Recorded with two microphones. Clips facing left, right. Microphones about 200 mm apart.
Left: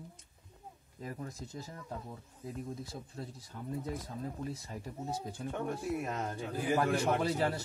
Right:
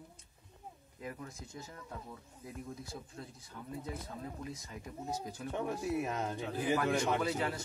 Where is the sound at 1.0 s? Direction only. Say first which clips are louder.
Left 3 dB; 35° left (ahead or behind).